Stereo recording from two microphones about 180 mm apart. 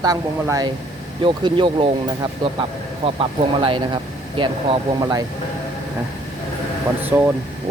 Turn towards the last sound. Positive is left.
turn(degrees=-10)  # may be behind; listen again after turning